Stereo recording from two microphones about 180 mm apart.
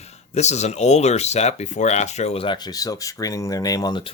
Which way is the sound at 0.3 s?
40° left (ahead or behind).